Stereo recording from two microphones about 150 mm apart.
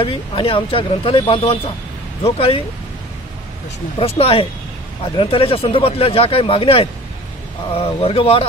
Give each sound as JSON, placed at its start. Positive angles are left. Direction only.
{"t": 0.0, "sound": "speech", "side_deg": 35}
{"t": 4.0, "sound": "speech", "side_deg": 40}